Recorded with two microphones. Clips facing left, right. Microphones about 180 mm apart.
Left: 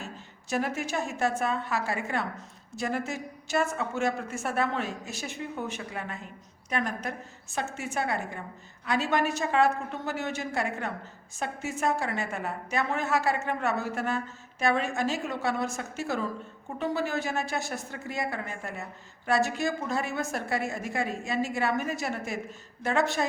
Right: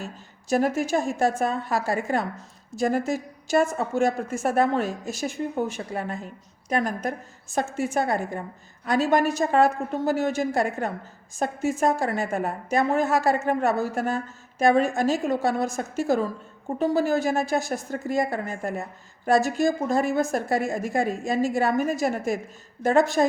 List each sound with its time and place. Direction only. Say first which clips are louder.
0.5 s a woman's voice: right 7 dB; 40° right (ahead or behind)